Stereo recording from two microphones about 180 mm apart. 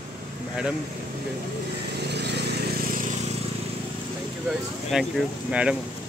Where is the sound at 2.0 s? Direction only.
70° right (ahead or behind).